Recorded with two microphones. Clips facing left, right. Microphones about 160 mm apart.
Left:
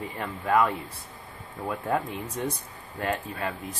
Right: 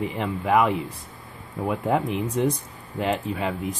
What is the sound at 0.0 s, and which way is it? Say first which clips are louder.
Speech: right 6 dB; 20° right (ahead or behind).